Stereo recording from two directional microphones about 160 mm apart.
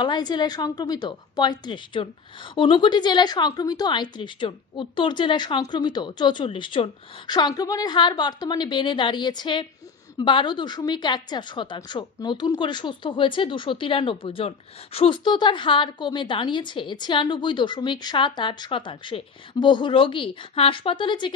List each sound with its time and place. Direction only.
0.0 s a woman's voice: 25° left (ahead or behind)